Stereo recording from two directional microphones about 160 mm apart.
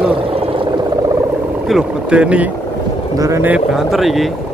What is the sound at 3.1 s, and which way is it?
Speech, 20° right (ahead or behind).